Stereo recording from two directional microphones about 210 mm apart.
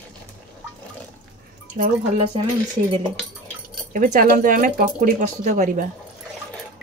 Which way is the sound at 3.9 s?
40° right (ahead or behind).